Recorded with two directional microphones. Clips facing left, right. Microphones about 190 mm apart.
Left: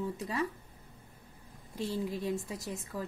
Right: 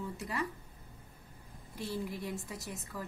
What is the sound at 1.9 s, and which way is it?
Speech, 20° left (ahead or behind).